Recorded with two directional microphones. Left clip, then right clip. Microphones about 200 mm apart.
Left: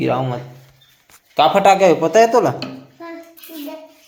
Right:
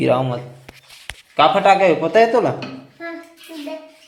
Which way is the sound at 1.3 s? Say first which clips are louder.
Left 1 dB; 25° left (ahead or behind).